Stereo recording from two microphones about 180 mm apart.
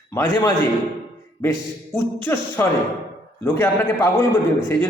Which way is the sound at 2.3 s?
15° left (ahead or behind).